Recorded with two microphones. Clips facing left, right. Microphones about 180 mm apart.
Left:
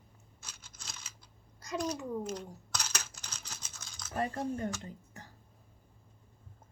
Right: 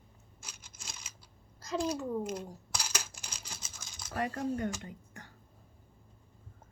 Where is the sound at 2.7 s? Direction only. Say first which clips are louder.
Even; 10° right (ahead or behind).